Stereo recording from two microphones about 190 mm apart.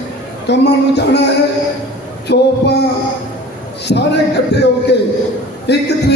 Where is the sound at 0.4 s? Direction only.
60° left (ahead or behind).